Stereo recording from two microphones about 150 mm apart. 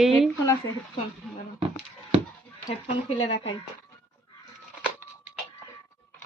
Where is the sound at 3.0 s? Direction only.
35° left (ahead or behind).